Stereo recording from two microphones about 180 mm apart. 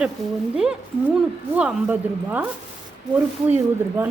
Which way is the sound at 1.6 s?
5° right (ahead or behind).